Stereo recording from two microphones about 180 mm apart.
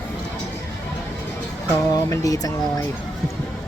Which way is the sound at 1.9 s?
20° left (ahead or behind).